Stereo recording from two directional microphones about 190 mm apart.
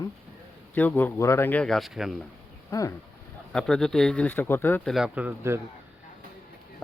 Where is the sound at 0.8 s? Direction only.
10° left (ahead or behind).